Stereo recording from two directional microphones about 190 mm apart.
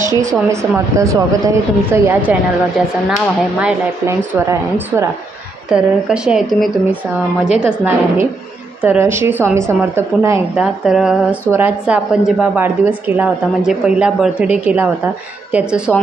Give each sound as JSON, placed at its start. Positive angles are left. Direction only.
{"t": 0.2, "sound": "a woman's voice", "side_deg": -15}
{"t": 5.7, "sound": "a woman's voice", "side_deg": -5}